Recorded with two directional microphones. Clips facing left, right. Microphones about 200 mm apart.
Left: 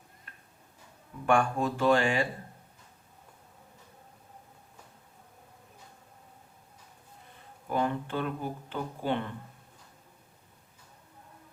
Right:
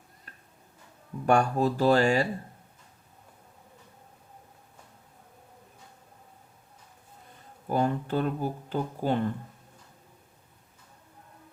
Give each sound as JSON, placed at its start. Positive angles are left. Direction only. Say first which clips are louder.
{"t": 0.3, "sound": "tick-tock", "louder": "right 3 dB", "side_deg": -35}
{"t": 1.3, "sound": "speech", "louder": "right 3 dB", "side_deg": -40}
{"t": 7.7, "sound": "speech", "louder": "right 3 dB", "side_deg": -40}